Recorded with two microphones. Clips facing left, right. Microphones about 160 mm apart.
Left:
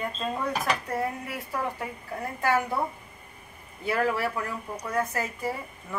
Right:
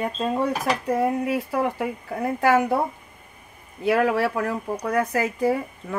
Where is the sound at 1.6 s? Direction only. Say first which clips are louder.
Right 7 dB; 75° right (ahead or behind).